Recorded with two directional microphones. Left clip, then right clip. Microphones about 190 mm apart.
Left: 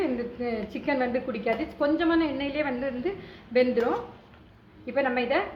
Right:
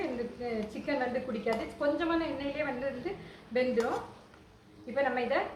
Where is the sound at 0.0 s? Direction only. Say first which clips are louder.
Left 6 dB; 30° left (ahead or behind).